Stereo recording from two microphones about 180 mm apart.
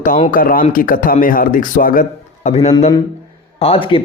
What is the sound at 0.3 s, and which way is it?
A man's voice, 50° left (ahead or behind).